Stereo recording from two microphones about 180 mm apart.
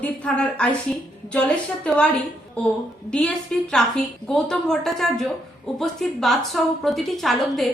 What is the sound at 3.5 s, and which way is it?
A woman's voice, 5° left (ahead or behind).